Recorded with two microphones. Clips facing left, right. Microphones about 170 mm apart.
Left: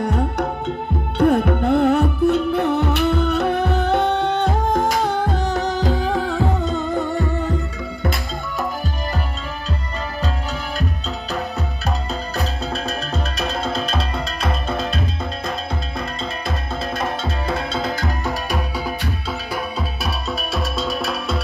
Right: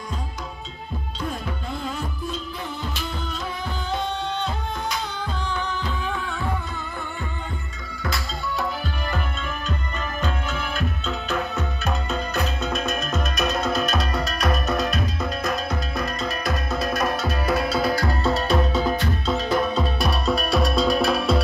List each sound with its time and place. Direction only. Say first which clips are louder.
0.0 s music: left 13 dB; 65° left (ahead or behind); by 5.6 s 45° left (ahead or behind)
5.6 s music: left 8 dB; 90° left
12.1 s music: even; 35° left (ahead or behind)
16.4 s music: right 2 dB; 25° left (ahead or behind); by 21.4 s centre (ahead or behind)